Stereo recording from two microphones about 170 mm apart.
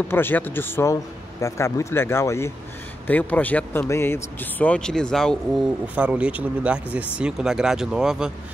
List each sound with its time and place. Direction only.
0.1 s speech: 10° left (ahead or behind); by 8.3 s 5° right (ahead or behind)